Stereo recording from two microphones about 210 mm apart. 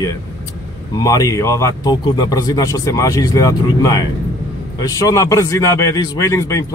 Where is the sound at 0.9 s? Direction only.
15° left (ahead or behind).